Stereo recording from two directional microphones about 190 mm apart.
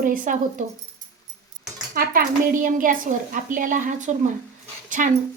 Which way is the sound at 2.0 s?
50° right (ahead or behind).